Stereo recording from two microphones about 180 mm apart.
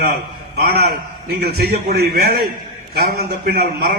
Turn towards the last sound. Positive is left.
turn(degrees=-60)  # may be behind; listen again after turning